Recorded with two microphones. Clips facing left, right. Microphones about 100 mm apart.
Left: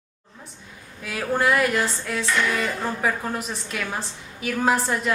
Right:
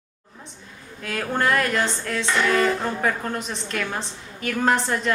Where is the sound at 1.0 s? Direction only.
5° left (ahead or behind).